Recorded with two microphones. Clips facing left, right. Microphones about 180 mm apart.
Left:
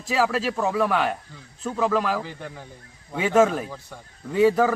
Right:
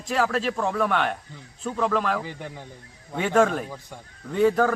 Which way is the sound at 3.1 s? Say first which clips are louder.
Left 2 dB; 5° left (ahead or behind).